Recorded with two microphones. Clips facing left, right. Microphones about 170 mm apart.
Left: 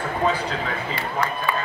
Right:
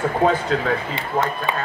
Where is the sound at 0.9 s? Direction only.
20° right (ahead or behind).